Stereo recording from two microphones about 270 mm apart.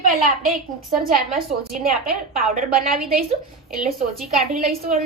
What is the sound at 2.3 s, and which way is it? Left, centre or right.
Speech, centre.